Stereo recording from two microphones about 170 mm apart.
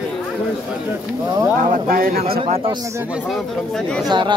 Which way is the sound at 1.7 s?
55° right (ahead or behind).